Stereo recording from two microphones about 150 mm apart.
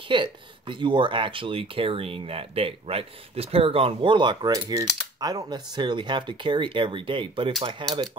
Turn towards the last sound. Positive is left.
turn(degrees=-35)  # may be behind; listen again after turning